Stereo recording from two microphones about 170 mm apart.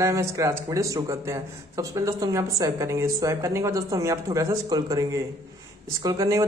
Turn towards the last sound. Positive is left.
turn(degrees=-20)  # may be behind; listen again after turning